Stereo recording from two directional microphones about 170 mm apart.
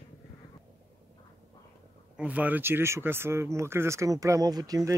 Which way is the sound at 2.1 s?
10° right (ahead or behind).